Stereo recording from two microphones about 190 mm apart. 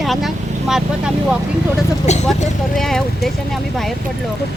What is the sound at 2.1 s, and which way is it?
Speech, 35° left (ahead or behind).